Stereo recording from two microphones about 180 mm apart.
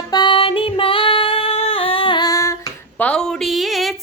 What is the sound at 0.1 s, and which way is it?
Female singing, 25° left (ahead or behind).